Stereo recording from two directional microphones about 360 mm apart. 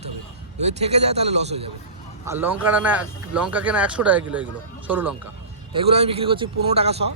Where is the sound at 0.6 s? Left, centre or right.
Centre.